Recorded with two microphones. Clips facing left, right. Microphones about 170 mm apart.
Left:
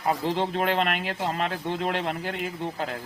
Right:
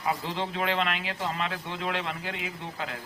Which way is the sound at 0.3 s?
45° left (ahead or behind).